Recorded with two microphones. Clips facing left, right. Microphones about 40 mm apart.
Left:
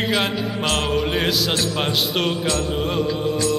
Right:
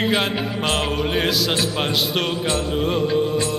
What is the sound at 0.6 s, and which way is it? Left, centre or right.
Speech, centre.